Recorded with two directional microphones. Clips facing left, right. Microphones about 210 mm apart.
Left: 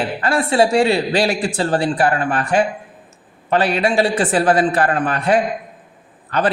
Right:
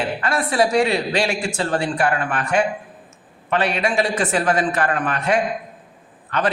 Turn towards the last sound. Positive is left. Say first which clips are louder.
# left 3 dB
turn(degrees=35)  # may be behind; listen again after turning